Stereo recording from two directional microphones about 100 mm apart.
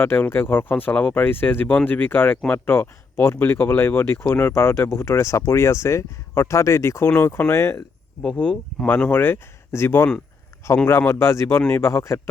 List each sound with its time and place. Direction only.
0.0 s speech: 20° left (ahead or behind)
8.2 s speech: 10° left (ahead or behind); by 12.3 s 25° left (ahead or behind)